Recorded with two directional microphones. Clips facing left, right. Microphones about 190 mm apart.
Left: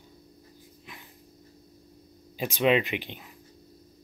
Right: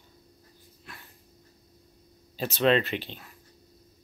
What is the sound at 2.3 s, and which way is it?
Speech, 15° left (ahead or behind).